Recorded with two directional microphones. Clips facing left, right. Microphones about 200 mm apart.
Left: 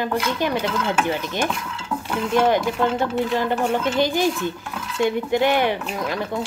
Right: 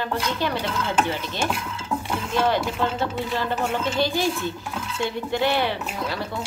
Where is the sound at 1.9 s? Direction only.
10° right (ahead or behind).